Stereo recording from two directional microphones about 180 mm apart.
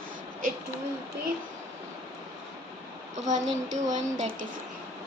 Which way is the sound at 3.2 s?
40° right (ahead or behind).